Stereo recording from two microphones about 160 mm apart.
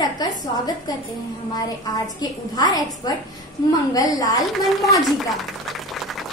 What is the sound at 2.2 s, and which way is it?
A woman's voice, 25° left (ahead or behind).